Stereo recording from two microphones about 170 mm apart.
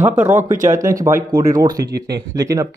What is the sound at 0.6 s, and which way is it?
Speech, 50° right (ahead or behind).